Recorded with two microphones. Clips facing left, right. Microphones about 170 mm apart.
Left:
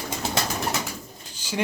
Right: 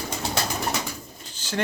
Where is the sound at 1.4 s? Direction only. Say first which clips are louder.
Even; 10° left (ahead or behind).